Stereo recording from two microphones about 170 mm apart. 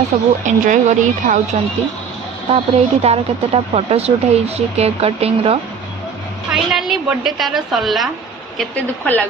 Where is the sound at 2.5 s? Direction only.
35° right (ahead or behind).